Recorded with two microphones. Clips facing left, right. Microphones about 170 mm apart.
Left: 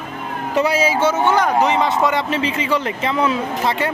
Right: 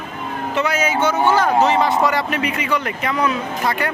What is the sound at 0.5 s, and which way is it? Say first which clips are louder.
Speech: left 3 dB; 30° left (ahead or behind).